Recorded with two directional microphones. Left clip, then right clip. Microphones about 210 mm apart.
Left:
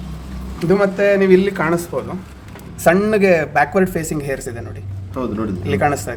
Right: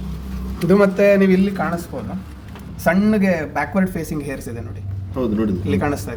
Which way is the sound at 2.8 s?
40° left (ahead or behind).